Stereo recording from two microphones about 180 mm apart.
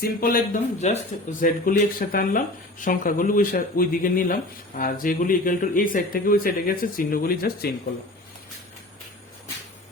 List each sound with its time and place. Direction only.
0.0 s speech: 55° left (ahead or behind)